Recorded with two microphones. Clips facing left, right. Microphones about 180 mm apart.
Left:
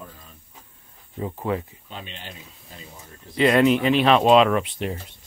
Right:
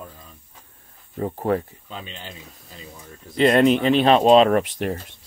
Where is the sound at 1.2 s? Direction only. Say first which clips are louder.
Right 4 dB; 45° right (ahead or behind).